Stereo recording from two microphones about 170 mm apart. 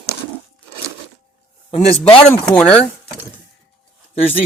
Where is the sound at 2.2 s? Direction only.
5° left (ahead or behind).